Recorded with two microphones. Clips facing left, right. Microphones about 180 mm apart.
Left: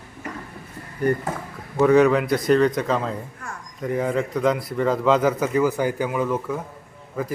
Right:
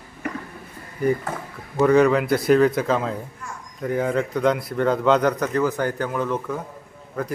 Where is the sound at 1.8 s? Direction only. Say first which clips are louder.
Even; centre (ahead or behind).